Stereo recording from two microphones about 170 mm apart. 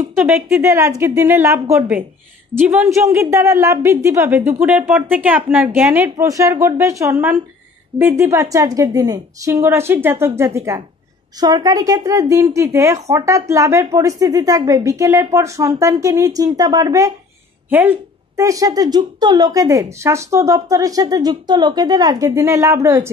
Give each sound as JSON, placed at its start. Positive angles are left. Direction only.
{"t": 0.5, "sound": "a woman's voice", "side_deg": -15}